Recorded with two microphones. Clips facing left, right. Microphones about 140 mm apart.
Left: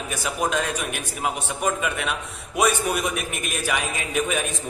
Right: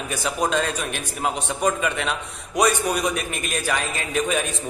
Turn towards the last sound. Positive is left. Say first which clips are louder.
# right 1 dB
turn(degrees=10)  # may be behind; listen again after turning